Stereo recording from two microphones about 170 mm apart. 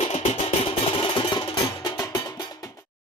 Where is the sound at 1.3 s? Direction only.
25° left (ahead or behind).